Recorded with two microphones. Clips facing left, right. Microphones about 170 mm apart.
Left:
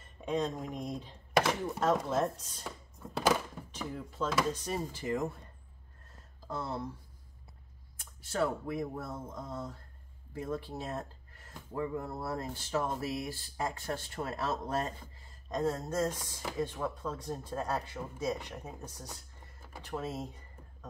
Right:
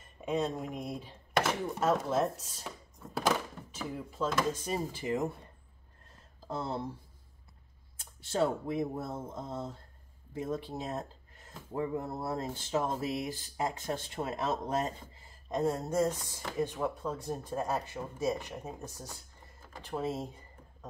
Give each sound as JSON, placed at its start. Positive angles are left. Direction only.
{"t": 0.2, "sound": "speech", "side_deg": -5}
{"t": 5.0, "sound": "speech", "side_deg": -20}
{"t": 6.4, "sound": "speech", "side_deg": -25}
{"t": 8.0, "sound": "speech", "side_deg": -25}